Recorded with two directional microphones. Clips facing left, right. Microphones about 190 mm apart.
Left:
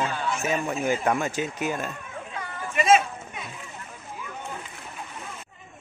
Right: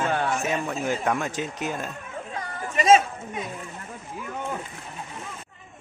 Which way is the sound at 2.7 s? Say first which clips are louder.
Right 2 dB; 40° right (ahead or behind).